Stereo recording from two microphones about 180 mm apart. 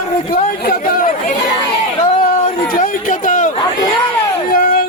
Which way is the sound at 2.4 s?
50° left (ahead or behind).